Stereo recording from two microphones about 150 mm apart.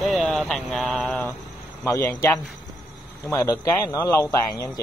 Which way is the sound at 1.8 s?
15° left (ahead or behind).